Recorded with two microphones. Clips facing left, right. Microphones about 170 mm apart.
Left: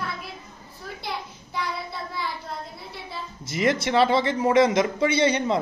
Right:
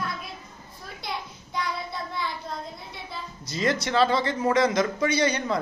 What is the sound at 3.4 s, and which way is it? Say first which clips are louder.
A man's voice: left 3 dB; 25° left (ahead or behind).